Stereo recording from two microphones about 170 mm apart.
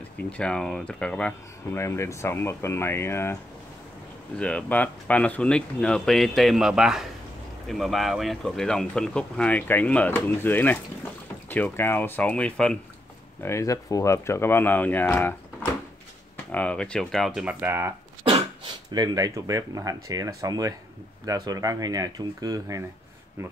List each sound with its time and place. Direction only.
0.2 s speech: 5° left (ahead or behind)
4.4 s speech: 5° left (ahead or behind)
16.5 s speech: 5° left (ahead or behind); by 17.9 s 15° right (ahead or behind)
18.2 s speech: 30° right (ahead or behind)